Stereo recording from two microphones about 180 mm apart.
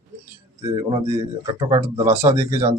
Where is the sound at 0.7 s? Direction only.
20° right (ahead or behind).